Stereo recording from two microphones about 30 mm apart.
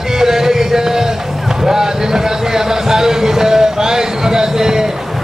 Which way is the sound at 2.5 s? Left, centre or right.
Centre.